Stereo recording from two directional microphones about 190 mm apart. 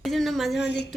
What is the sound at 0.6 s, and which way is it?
Speech, 65° left (ahead or behind).